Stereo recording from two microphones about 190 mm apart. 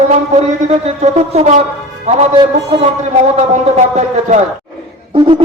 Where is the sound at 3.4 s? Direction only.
35° right (ahead or behind).